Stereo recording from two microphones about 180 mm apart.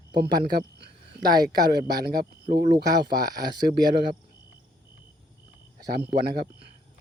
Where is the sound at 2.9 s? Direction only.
20° right (ahead or behind).